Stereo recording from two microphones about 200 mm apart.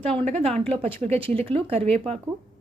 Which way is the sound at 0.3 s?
30° right (ahead or behind).